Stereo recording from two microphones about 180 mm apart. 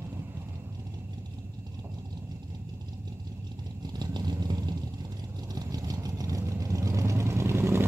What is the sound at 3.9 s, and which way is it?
Vehicle, 25° right (ahead or behind).